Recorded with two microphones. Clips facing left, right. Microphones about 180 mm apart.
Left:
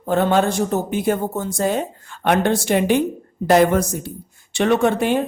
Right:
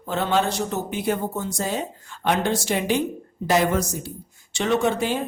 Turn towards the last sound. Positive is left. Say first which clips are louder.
# left 5 dB
turn(degrees=60)  # may be behind; listen again after turning